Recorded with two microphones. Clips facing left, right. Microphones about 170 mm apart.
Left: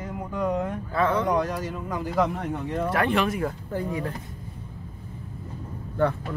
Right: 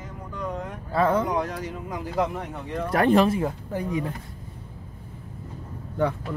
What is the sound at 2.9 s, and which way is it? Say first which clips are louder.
Speech: right 6 dB; 40° right (ahead or behind).